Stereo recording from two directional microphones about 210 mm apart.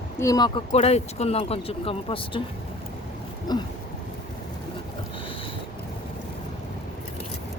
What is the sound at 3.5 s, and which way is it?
Speech, 20° left (ahead or behind).